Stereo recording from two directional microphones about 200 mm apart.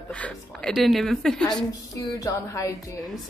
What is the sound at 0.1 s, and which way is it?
A woman's voice, 5° left (ahead or behind).